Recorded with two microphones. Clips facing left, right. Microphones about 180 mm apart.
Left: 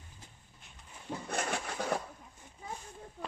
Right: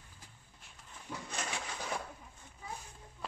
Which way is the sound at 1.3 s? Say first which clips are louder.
Left 7 dB; 55° left (ahead or behind).